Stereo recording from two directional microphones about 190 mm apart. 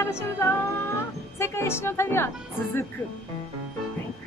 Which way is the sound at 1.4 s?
15° left (ahead or behind).